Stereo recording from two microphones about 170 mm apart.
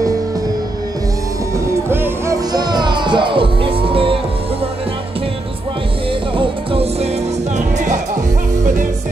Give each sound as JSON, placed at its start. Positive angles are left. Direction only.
{"t": 1.9, "sound": "music", "side_deg": -15}
{"t": 6.3, "sound": "music", "side_deg": -35}